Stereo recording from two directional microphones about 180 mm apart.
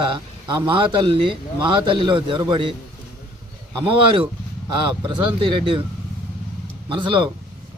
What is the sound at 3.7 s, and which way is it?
A man's voice, 30° right (ahead or behind).